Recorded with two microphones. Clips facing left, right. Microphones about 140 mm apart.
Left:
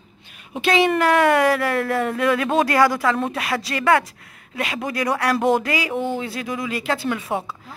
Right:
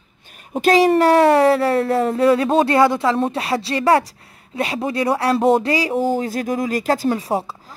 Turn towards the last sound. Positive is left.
turn(degrees=-35)  # may be behind; listen again after turning